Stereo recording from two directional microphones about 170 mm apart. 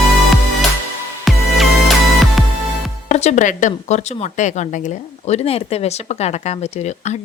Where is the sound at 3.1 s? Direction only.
40° left (ahead or behind).